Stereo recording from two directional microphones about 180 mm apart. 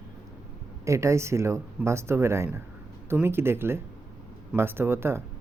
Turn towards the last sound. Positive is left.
turn(degrees=-15)  # may be behind; listen again after turning